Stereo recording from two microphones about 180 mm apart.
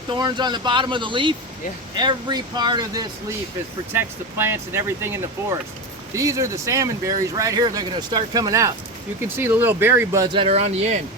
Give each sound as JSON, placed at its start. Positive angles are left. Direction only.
{"t": 0.1, "sound": "speech", "side_deg": -25}